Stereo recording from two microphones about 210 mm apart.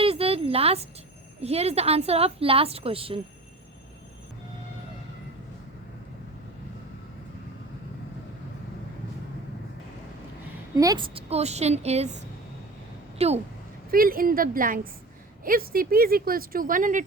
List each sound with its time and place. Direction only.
0.0 s a sound: 25° right (ahead or behind)
1.4 s a woman's voice: 30° right (ahead or behind)
10.8 s a woman's voice: 20° right (ahead or behind)
13.1 s a woman's voice: 30° right (ahead or behind)
13.9 s speech: 45° right (ahead or behind)